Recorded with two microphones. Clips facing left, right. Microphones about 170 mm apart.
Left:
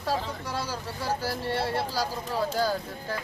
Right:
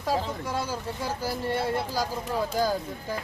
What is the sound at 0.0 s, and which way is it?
Speech, 15° right (ahead or behind).